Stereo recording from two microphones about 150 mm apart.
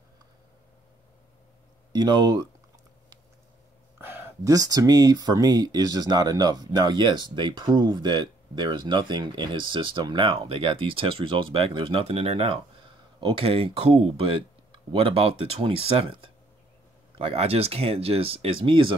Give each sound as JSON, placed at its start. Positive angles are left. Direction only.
{"t": 1.9, "sound": "speech", "side_deg": -30}
{"t": 4.0, "sound": "speech", "side_deg": -15}